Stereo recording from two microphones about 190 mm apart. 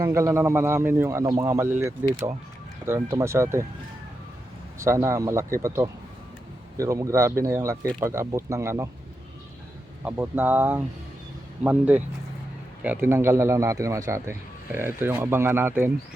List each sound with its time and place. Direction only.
0.0 s speech: 15° right (ahead or behind)
4.8 s speech: 15° right (ahead or behind)
10.0 s speech: 10° right (ahead or behind)